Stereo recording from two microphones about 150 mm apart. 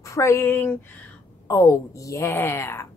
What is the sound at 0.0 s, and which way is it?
Speech, 20° left (ahead or behind).